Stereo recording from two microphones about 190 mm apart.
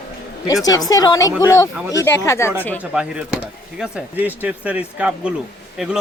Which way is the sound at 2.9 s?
5° right (ahead or behind).